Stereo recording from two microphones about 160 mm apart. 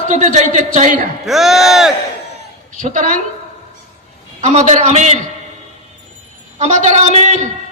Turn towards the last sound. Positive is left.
turn(degrees=-45)  # may be behind; listen again after turning